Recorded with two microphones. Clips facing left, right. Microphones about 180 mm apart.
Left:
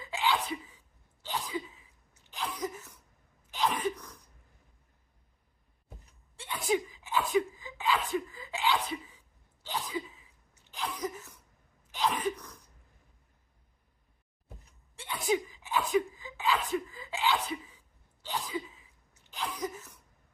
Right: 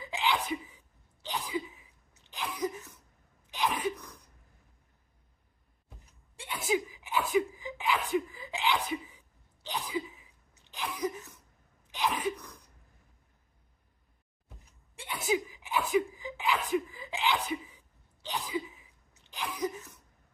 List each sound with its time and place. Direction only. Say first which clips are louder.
0.0 s sneeze: left 1 dB; 15° right (ahead or behind)
1.3 s cough: right 1 dB; 15° right (ahead or behind)
3.5 s sneeze: left 1 dB; 15° right (ahead or behind)
6.3 s a sound: left 1 dB; 15° right (ahead or behind)
9.6 s cough: right 1 dB; 15° right (ahead or behind)
14.9 s a sound: left 1 dB; 15° right (ahead or behind)
18.3 s cough: right 1 dB; 15° right (ahead or behind)
19.4 s sneeze: right 2 dB; 15° right (ahead or behind)